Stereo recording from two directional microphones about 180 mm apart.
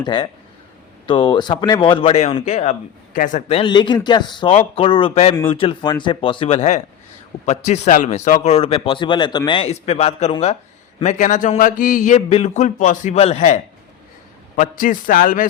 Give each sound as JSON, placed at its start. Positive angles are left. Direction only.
{"t": 0.0, "sound": "a man's voice", "side_deg": 25}
{"t": 3.6, "sound": "a man's voice", "side_deg": 25}